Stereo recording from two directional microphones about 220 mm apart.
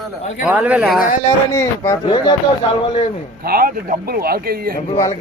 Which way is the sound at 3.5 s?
40° right (ahead or behind).